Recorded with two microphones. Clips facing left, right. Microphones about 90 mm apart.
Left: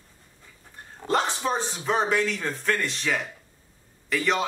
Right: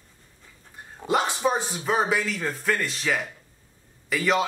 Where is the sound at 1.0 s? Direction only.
10° right (ahead or behind).